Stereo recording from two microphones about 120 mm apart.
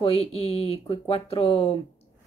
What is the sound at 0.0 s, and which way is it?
Speech, 50° left (ahead or behind).